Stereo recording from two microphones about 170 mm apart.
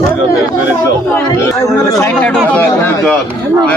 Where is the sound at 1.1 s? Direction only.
15° left (ahead or behind).